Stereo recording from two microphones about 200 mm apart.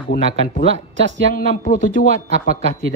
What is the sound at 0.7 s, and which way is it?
Speech, 65° right (ahead or behind).